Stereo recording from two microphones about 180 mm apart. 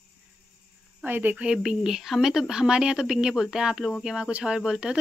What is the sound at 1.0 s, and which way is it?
Speech, 10° right (ahead or behind).